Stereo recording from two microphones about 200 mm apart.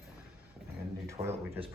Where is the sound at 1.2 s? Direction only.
20° right (ahead or behind).